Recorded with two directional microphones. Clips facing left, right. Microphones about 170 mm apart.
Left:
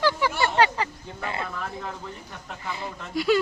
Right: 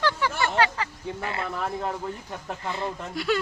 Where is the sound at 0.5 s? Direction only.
20° left (ahead or behind).